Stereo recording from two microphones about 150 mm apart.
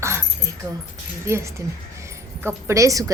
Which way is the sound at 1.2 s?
15° right (ahead or behind).